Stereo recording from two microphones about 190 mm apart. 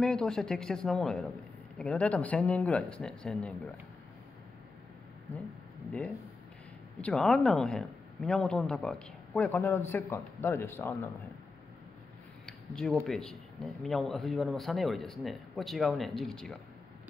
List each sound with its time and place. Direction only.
0.0 s a woman's voice: 5° left (ahead or behind)
5.9 s a woman's voice: 5° left (ahead or behind)
12.4 s a sound: 5° left (ahead or behind)
13.0 s speech: centre (ahead or behind)